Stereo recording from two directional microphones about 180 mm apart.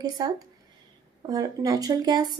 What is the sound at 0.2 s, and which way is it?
A woman's voice, 25° right (ahead or behind).